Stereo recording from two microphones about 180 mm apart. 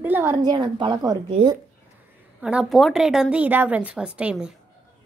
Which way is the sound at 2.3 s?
5° right (ahead or behind).